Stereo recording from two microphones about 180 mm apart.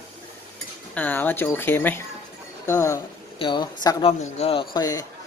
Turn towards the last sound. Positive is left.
turn(degrees=20)  # may be behind; listen again after turning